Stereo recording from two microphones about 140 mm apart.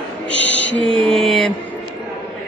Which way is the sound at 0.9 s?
45° right (ahead or behind).